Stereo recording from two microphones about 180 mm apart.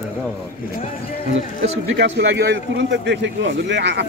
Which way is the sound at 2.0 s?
70° right (ahead or behind).